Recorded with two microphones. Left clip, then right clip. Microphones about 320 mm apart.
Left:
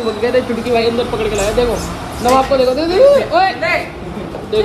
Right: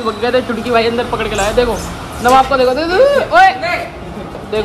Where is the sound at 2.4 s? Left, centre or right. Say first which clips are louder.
Even; centre.